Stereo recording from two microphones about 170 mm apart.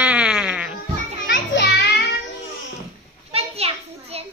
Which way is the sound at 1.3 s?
85° left.